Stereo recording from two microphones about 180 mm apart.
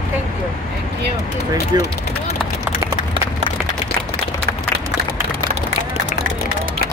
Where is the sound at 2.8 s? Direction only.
20° right (ahead or behind).